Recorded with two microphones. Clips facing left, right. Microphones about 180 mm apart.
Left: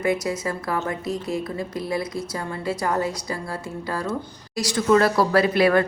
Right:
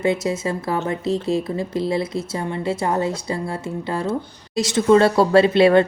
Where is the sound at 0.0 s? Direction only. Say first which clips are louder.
Right 3 dB; 25° right (ahead or behind).